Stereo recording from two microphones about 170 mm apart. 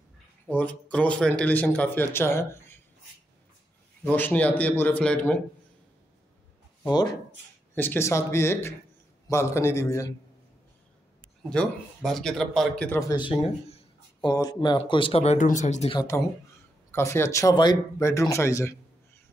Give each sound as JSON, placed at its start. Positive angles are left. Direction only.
{"t": 0.5, "sound": "speech", "side_deg": 10}
{"t": 4.0, "sound": "speech", "side_deg": 10}
{"t": 6.9, "sound": "speech", "side_deg": 25}
{"t": 7.7, "sound": "speech", "side_deg": 10}
{"t": 11.4, "sound": "speech", "side_deg": 5}
{"t": 13.7, "sound": "a sound", "side_deg": 35}
{"t": 14.3, "sound": "speech", "side_deg": 20}
{"t": 15.9, "sound": "speech", "side_deg": 20}